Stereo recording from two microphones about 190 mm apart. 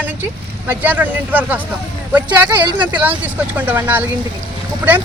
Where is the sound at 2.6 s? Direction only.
25° right (ahead or behind).